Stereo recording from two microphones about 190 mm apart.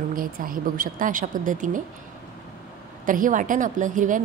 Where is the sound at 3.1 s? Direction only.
45° right (ahead or behind).